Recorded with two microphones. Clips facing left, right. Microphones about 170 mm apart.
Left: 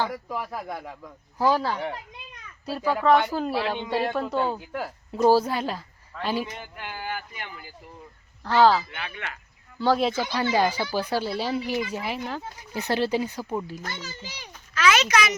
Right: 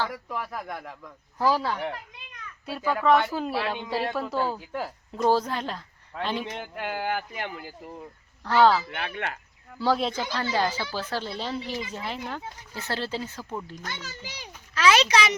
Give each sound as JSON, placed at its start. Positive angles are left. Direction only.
{"t": 0.1, "sound": "speech", "side_deg": 5}
{"t": 6.7, "sound": "speech", "side_deg": -65}
{"t": 8.4, "sound": "speech", "side_deg": 0}
{"t": 8.9, "sound": "speech", "side_deg": -55}
{"t": 9.7, "sound": "speech", "side_deg": 0}
{"t": 14.8, "sound": "speech", "side_deg": -30}